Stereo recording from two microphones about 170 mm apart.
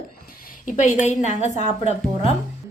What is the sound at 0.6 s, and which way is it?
A woman's voice, 45° left (ahead or behind).